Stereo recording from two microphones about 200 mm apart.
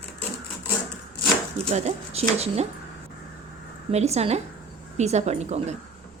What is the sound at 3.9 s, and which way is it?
A woman's voice, 35° right (ahead or behind).